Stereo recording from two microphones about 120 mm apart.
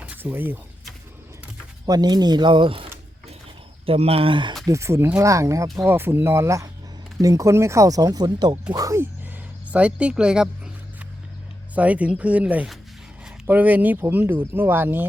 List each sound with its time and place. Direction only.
0.0 s a sound: 15° right (ahead or behind)
1.9 s speech: 35° right (ahead or behind)
4.6 s speech: 25° right (ahead or behind)
9.7 s speech: 10° right (ahead or behind)
11.7 s speech: 10° right (ahead or behind)